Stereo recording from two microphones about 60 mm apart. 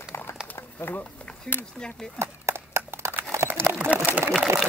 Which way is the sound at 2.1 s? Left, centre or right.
Right.